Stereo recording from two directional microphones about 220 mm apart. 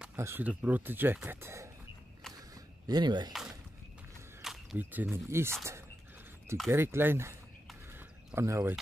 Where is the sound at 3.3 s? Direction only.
Centre (ahead or behind).